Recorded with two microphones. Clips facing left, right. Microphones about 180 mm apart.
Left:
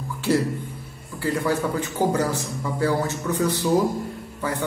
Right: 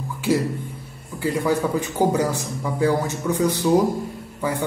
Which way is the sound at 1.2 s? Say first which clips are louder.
Right 2 dB; 15° right (ahead or behind).